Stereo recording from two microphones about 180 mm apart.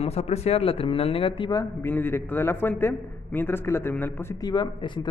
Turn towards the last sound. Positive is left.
turn(degrees=25)  # may be behind; listen again after turning